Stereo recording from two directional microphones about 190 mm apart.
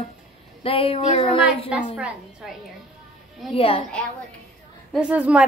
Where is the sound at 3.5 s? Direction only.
30° left (ahead or behind).